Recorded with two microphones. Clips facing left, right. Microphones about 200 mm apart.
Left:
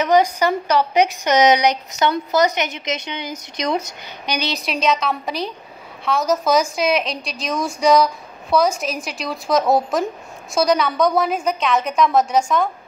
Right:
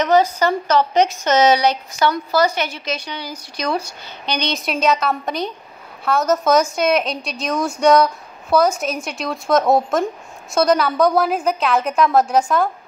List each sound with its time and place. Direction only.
0.0 s a woman's voice: 15° left (ahead or behind)
4.3 s a woman's voice: 5° left (ahead or behind)